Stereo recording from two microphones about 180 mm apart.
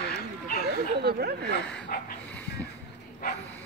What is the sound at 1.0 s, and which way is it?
Speech, 60° right (ahead or behind).